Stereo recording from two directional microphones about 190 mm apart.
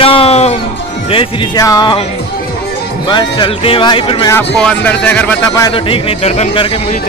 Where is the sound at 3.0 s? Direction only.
25° left (ahead or behind).